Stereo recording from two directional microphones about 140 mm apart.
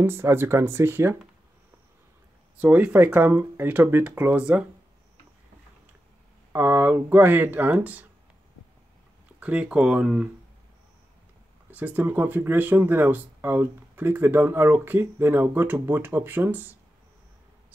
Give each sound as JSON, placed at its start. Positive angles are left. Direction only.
{"t": 0.0, "sound": "speech", "side_deg": -15}
{"t": 2.6, "sound": "speech", "side_deg": -10}
{"t": 6.5, "sound": "speech", "side_deg": -15}
{"t": 9.4, "sound": "speech", "side_deg": -10}
{"t": 11.7, "sound": "speech", "side_deg": -10}